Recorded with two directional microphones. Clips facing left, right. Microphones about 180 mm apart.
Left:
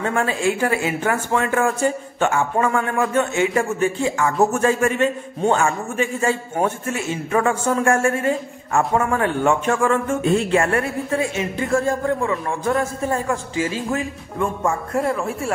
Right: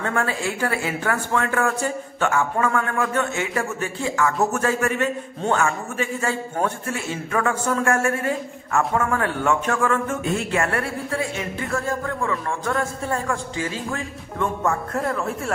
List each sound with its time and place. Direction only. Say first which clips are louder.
0.0 s a man's voice: left 4 dB; 25° left (ahead or behind)
14.4 s music: left 1 dB; 10° left (ahead or behind)
15.0 s speech: left 3 dB; 5° left (ahead or behind)